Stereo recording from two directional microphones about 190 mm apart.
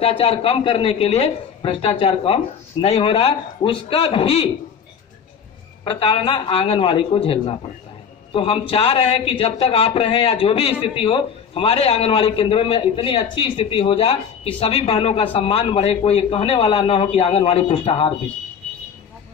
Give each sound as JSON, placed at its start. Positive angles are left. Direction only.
{"t": 0.0, "sound": "speech", "side_deg": 30}
{"t": 5.9, "sound": "speech", "side_deg": 30}